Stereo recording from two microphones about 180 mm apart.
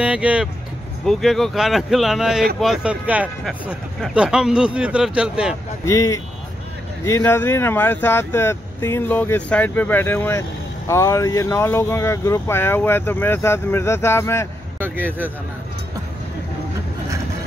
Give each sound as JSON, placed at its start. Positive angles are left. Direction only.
{"t": 0.0, "sound": "speech", "side_deg": -5}
{"t": 5.9, "sound": "speech", "side_deg": 15}
{"t": 14.8, "sound": "speech", "side_deg": -10}